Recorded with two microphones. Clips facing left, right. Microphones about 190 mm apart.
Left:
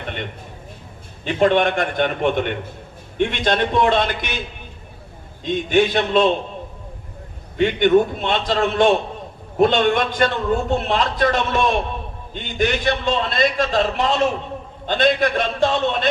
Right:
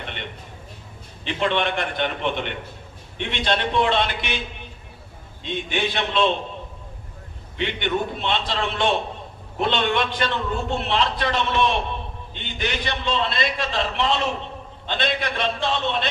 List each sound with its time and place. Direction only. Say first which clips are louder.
1.2 s a man's voice: left 7 dB; 45° left (ahead or behind)
5.4 s a man's voice: left 9 dB; 45° left (ahead or behind)
7.5 s a man's voice: left 10 dB; 45° left (ahead or behind)